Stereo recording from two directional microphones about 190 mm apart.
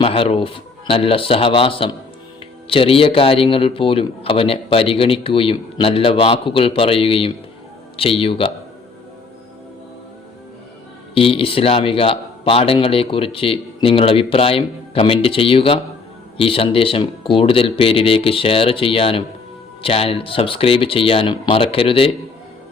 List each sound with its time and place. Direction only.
0.0 s a man's voice: 30° left (ahead or behind)
11.1 s a man's voice: 30° left (ahead or behind)